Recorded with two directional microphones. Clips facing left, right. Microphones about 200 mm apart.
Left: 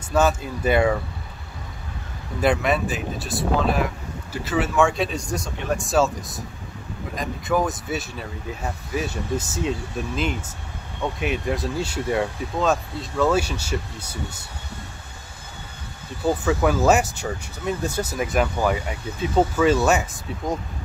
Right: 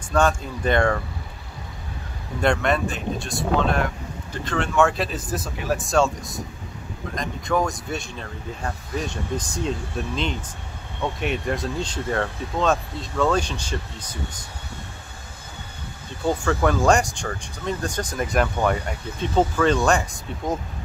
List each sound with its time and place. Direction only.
0.1 s speech: 5° left (ahead or behind)
2.4 s speech: 5° left (ahead or behind)
16.3 s speech: 5° left (ahead or behind)